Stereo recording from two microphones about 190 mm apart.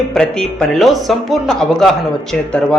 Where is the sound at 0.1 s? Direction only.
5° left (ahead or behind).